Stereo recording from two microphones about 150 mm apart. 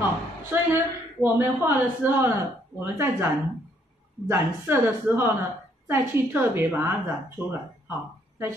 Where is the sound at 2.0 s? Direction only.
10° right (ahead or behind).